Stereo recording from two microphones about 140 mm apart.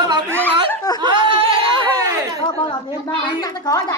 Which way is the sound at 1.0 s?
35° right (ahead or behind).